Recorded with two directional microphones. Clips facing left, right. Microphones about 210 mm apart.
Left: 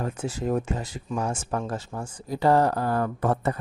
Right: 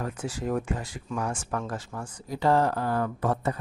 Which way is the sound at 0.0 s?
25° left (ahead or behind).